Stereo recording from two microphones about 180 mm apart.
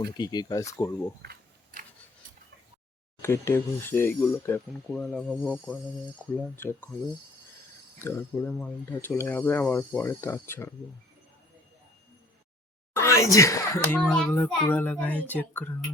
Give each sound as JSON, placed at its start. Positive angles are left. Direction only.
{"t": 0.0, "sound": "speech", "side_deg": 20}
{"t": 1.2, "sound": "a sound", "side_deg": -60}
{"t": 3.2, "sound": "speech", "side_deg": 15}
{"t": 6.3, "sound": "speech", "side_deg": 10}
{"t": 8.0, "sound": "speech", "side_deg": 15}
{"t": 12.9, "sound": "speech", "side_deg": 15}